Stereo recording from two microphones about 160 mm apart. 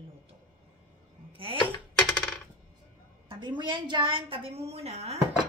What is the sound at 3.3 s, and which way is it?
A woman's voice, 30° right (ahead or behind).